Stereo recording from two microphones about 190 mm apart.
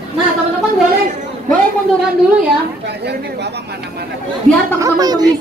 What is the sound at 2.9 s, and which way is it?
Speech, 60° right (ahead or behind).